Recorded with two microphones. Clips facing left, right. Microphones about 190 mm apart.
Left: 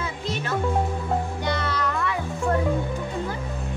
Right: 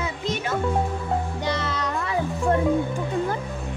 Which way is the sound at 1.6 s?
25° right (ahead or behind).